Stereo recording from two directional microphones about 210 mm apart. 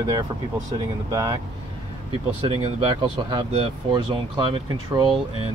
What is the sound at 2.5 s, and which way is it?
Speech, 25° right (ahead or behind).